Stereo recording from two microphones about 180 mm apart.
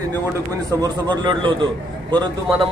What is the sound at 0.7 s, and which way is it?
Speech, 20° right (ahead or behind).